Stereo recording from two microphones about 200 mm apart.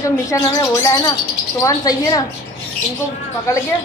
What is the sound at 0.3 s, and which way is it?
A woman's voice, 15° left (ahead or behind).